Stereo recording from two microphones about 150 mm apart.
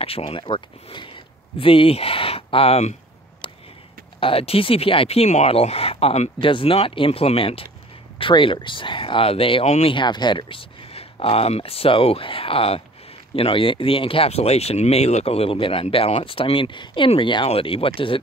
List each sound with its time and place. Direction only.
0.0 s speech: 40° left (ahead or behind)
4.2 s speech: 40° left (ahead or behind)